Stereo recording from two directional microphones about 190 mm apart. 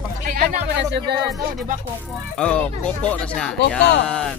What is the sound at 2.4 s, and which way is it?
Speech, 5° left (ahead or behind).